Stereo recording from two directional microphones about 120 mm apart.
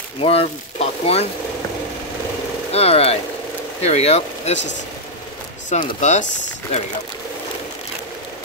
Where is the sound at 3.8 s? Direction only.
65° left (ahead or behind).